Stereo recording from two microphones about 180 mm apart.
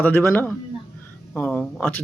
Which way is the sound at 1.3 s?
5° left (ahead or behind).